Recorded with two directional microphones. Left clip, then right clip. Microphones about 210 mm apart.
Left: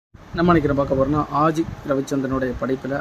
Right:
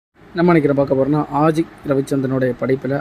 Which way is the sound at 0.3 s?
15° right (ahead or behind).